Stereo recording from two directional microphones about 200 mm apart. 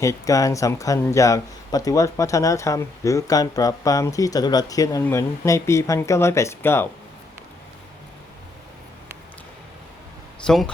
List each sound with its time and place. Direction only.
0.0 s speech: 15° left (ahead or behind)
10.4 s speech: centre (ahead or behind)